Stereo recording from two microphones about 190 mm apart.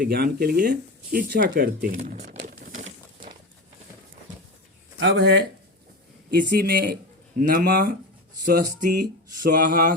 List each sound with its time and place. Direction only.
0.0 s speech: 55° right (ahead or behind)
2.0 s speech: 40° right (ahead or behind)
2.5 s a sound: 45° right (ahead or behind)
4.9 s speech: 70° right (ahead or behind); by 9.9 s 45° right (ahead or behind)